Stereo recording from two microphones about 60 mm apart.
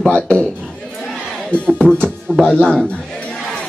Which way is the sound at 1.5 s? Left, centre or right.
Centre.